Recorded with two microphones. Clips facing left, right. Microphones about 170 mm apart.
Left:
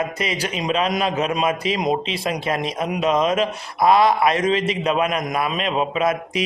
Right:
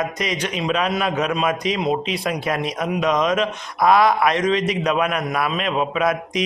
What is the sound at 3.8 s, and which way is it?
Speech, centre (ahead or behind).